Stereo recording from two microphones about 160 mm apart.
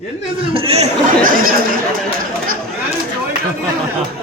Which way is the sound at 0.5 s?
40° right (ahead or behind).